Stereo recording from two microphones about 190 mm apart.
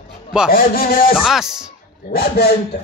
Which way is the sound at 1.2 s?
Centre (ahead or behind).